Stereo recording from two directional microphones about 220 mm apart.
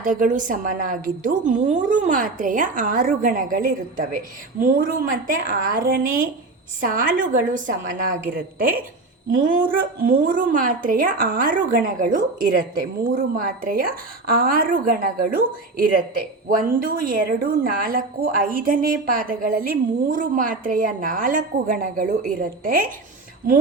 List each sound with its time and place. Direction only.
0.0 s a woman's voice: 35° right (ahead or behind)
9.4 s a woman's voice: 35° right (ahead or behind)